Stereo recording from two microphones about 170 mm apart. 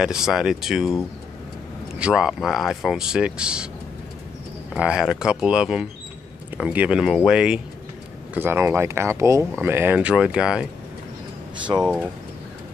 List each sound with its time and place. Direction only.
0.0 s speech: 5° right (ahead or behind)
2.0 s speech: 5° right (ahead or behind)
4.7 s speech: 5° right (ahead or behind)
11.7 s speech: 25° right (ahead or behind)